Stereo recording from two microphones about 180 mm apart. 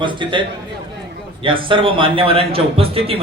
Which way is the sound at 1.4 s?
30° right (ahead or behind).